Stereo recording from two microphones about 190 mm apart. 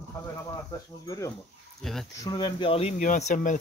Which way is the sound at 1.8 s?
Centre (ahead or behind).